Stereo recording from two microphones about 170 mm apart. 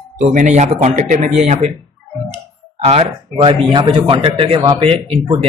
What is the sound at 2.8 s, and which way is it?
Speech, 40° right (ahead or behind).